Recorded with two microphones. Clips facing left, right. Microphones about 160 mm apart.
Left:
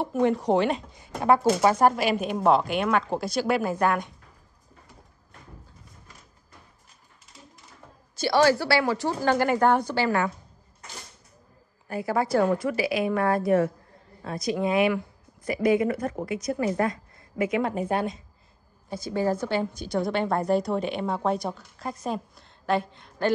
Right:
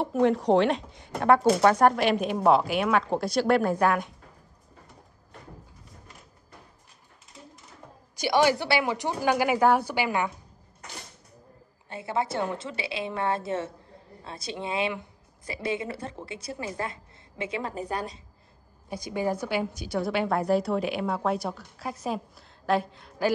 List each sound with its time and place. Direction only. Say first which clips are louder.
0.0 s a woman's voice: even; centre (ahead or behind)
8.2 s a woman's voice: left 2 dB; 15° right (ahead or behind)
11.9 s a woman's voice: left 5 dB; 25° right (ahead or behind)
18.9 s a woman's voice: left 3 dB; 15° right (ahead or behind)